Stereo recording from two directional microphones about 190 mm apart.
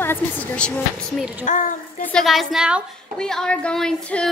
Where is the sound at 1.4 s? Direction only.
45° left (ahead or behind).